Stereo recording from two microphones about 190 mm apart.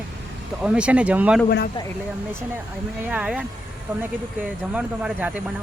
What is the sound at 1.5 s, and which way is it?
Speech, 55° left (ahead or behind).